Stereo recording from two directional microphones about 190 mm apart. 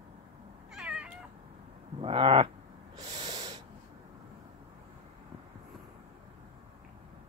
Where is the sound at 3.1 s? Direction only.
20° right (ahead or behind).